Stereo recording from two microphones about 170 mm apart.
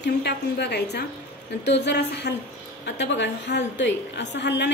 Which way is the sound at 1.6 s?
90° left.